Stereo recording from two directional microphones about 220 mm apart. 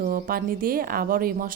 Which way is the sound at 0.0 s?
40° right (ahead or behind).